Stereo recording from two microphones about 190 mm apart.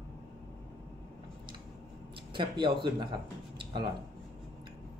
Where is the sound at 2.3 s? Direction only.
25° right (ahead or behind).